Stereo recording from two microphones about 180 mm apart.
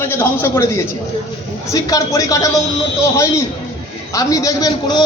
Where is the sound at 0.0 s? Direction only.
15° left (ahead or behind).